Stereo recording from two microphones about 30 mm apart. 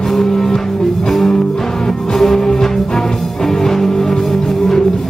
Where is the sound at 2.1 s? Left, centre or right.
Centre.